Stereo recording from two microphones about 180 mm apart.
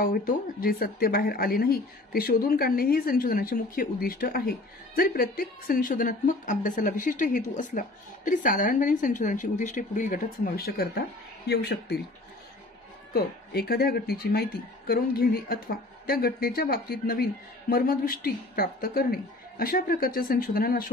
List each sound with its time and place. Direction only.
0.0 s speech: 50° left (ahead or behind)
13.1 s speech: 60° left (ahead or behind)